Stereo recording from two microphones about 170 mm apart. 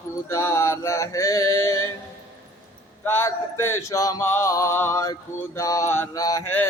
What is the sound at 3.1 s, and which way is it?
Mantra, 15° left (ahead or behind).